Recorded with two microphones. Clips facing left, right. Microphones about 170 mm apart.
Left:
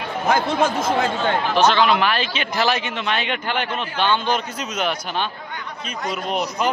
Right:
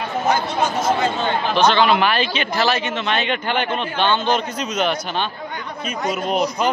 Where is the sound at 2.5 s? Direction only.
15° left (ahead or behind).